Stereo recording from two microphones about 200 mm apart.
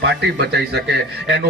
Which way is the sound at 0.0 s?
55° right (ahead or behind).